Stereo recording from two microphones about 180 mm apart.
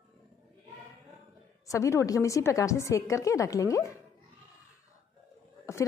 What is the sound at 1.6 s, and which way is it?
A woman's voice, 15° left (ahead or behind).